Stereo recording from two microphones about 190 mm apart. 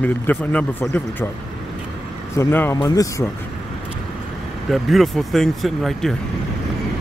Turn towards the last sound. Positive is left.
turn(degrees=0)  # may be behind; listen again after turning